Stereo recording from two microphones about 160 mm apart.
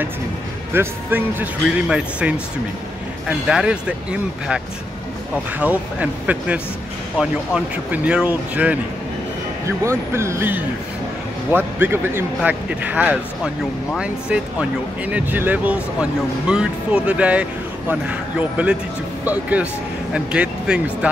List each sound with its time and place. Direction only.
0.7 s speech: 10° right (ahead or behind)
5.6 s speech: 10° right (ahead or behind)
9.8 s speech: 15° right (ahead or behind)
19.2 s speech: 10° right (ahead or behind)